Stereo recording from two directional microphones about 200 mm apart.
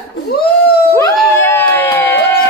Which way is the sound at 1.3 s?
10° left (ahead or behind).